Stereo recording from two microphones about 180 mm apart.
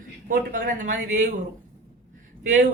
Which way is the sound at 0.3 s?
50° right (ahead or behind).